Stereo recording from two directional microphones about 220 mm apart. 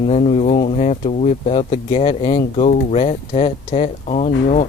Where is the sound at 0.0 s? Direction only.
30° left (ahead or behind).